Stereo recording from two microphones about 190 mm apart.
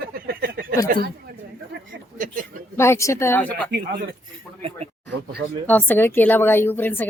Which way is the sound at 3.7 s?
60° right (ahead or behind).